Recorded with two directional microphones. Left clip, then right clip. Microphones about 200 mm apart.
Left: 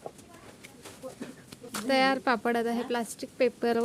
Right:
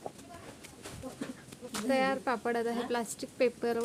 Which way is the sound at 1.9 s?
50° left (ahead or behind).